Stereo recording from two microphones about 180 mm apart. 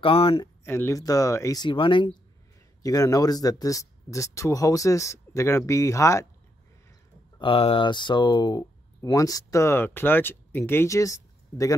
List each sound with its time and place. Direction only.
0.0 s speech: 30° left (ahead or behind)
0.7 s speech: 15° left (ahead or behind)
7.3 s speech: 30° left (ahead or behind)